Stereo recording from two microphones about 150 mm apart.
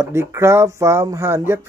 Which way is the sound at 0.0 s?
15° right (ahead or behind).